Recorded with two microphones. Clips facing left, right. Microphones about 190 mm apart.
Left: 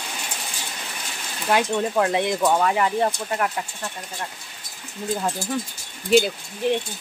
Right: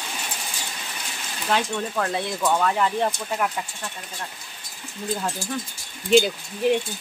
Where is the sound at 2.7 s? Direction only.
10° left (ahead or behind).